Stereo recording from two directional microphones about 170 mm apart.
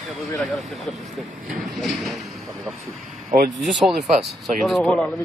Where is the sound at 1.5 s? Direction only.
Centre (ahead or behind).